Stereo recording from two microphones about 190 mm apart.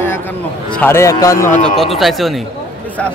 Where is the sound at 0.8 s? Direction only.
15° left (ahead or behind).